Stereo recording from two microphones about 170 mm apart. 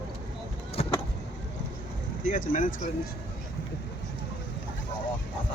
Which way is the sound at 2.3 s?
50° left (ahead or behind).